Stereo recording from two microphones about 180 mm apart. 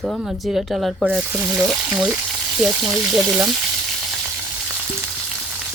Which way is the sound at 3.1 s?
5° right (ahead or behind).